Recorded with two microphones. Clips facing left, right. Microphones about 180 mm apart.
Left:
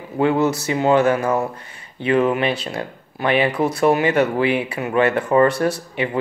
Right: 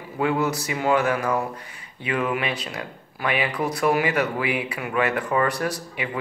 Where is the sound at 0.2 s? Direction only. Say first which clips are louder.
Left 5 dB; 25° left (ahead or behind).